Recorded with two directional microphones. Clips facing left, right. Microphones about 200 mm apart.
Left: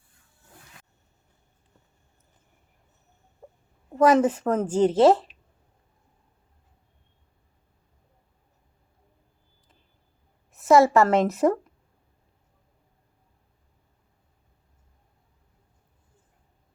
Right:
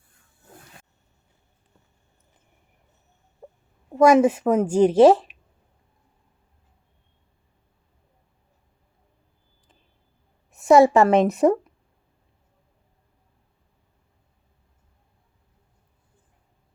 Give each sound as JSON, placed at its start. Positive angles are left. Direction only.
{"t": 3.9, "sound": "a woman's voice", "side_deg": -10}
{"t": 10.7, "sound": "a woman's voice", "side_deg": -15}